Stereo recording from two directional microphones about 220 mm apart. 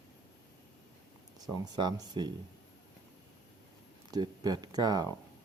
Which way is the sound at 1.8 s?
20° right (ahead or behind).